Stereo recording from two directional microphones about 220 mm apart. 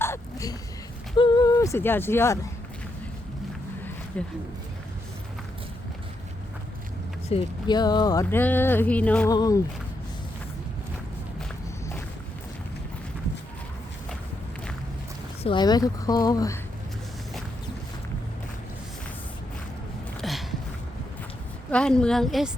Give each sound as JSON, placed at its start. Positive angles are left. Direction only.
{"t": 0.0, "sound": "a sound", "side_deg": 15}
{"t": 1.1, "sound": "speech", "side_deg": 20}
{"t": 7.3, "sound": "speech", "side_deg": 20}
{"t": 9.3, "sound": "speech", "side_deg": 15}
{"t": 15.4, "sound": "speech", "side_deg": 20}
{"t": 20.2, "sound": "a sound", "side_deg": 0}
{"t": 21.7, "sound": "a woman's voice", "side_deg": 5}